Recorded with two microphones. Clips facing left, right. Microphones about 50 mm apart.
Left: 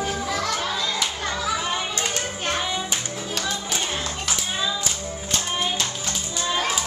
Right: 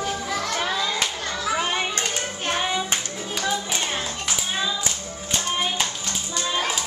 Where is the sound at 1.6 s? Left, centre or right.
Right.